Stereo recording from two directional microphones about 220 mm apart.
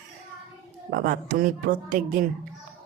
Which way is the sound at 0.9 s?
40° right (ahead or behind).